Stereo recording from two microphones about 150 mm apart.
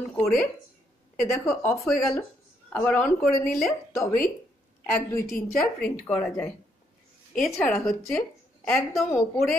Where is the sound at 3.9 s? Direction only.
20° left (ahead or behind).